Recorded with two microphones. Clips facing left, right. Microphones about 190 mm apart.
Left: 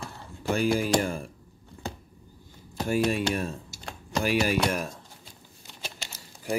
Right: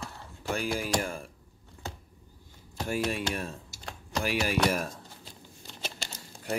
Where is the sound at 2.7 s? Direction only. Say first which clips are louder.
Left 5 dB; 15° left (ahead or behind).